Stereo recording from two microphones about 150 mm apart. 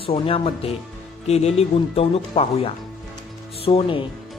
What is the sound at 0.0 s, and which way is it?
Speech, 35° left (ahead or behind).